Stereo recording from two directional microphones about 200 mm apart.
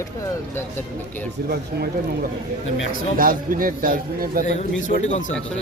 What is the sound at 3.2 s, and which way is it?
A man's voice, 45° right (ahead or behind).